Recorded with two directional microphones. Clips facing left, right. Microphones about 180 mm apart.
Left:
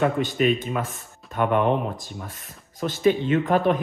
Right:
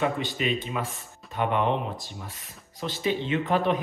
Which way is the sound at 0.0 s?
50° left (ahead or behind).